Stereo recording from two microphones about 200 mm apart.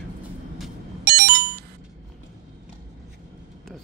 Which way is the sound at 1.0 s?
55° right (ahead or behind).